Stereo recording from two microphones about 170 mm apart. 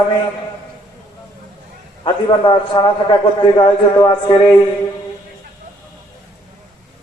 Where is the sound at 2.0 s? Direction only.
30° left (ahead or behind).